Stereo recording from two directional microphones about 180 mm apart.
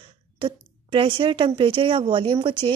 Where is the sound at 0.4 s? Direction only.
25° right (ahead or behind).